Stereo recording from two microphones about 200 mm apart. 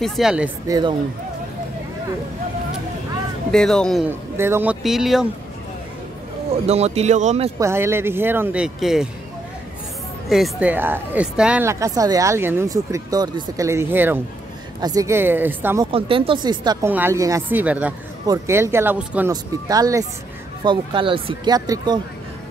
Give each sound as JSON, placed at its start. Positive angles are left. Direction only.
{"t": 0.0, "sound": "speech", "side_deg": 0}
{"t": 0.7, "sound": "speech", "side_deg": -20}
{"t": 3.5, "sound": "speech", "side_deg": 5}
{"t": 4.4, "sound": "speech", "side_deg": -10}
{"t": 6.6, "sound": "speech", "side_deg": -30}
{"t": 7.5, "sound": "speech", "side_deg": -15}
{"t": 10.3, "sound": "speech", "side_deg": -5}
{"t": 15.8, "sound": "speech", "side_deg": -25}